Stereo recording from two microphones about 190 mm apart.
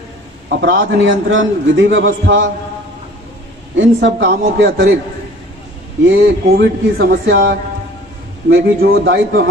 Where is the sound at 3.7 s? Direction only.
70° right (ahead or behind).